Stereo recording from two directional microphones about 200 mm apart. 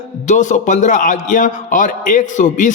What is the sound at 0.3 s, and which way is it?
A man's voice, 40° left (ahead or behind).